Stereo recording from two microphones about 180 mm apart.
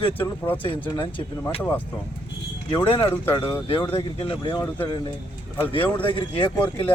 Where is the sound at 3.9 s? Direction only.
30° left (ahead or behind).